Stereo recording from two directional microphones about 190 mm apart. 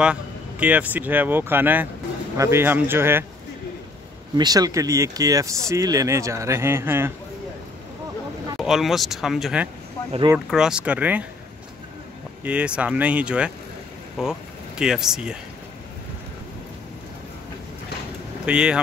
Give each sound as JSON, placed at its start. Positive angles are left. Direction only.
{"t": 0.0, "sound": "speech", "side_deg": -5}
{"t": 4.4, "sound": "speech", "side_deg": -20}
{"t": 8.5, "sound": "speech", "side_deg": 0}
{"t": 12.4, "sound": "speech", "side_deg": -5}
{"t": 18.4, "sound": "speech", "side_deg": -5}